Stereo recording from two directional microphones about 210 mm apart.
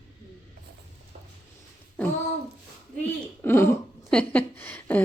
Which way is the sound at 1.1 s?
35° right (ahead or behind).